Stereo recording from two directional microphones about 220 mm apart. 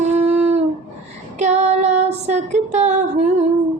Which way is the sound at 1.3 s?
30° right (ahead or behind).